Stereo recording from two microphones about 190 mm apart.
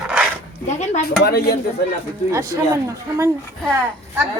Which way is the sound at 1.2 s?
55° left (ahead or behind).